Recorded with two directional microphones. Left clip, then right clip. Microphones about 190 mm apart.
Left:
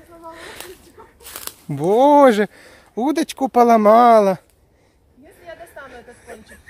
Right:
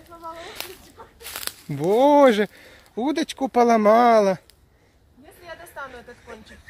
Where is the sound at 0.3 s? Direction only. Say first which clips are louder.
Left 1 dB; 40° left (ahead or behind).